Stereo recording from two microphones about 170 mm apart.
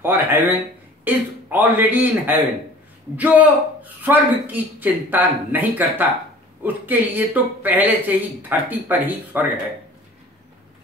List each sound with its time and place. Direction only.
0.0 s speech: 10° right (ahead or behind)